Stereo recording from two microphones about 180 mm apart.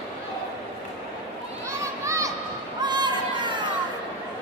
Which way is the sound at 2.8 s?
25° right (ahead or behind).